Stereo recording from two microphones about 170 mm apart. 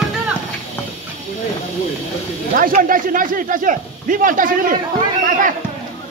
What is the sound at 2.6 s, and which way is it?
Speech, 55° right (ahead or behind).